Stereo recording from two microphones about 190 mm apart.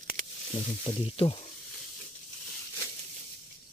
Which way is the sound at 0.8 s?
30° left (ahead or behind).